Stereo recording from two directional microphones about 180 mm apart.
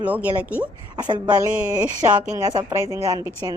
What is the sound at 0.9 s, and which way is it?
A woman's voice, 25° right (ahead or behind).